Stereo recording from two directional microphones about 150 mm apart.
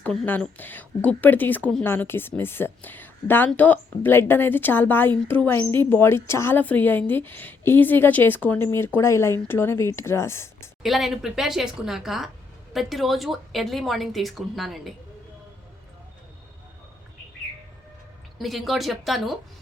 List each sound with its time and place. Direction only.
0.0 s a woman's voice: 5° left (ahead or behind)
10.8 s a woman's voice: centre (ahead or behind)
18.3 s a woman's voice: centre (ahead or behind)